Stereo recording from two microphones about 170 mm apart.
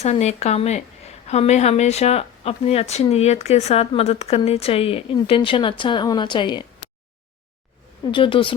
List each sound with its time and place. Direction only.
0.0 s a woman's voice: 40° left (ahead or behind)
8.1 s a woman's voice: 30° left (ahead or behind)